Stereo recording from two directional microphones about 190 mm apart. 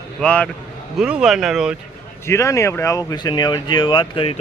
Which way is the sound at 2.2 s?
15° left (ahead or behind).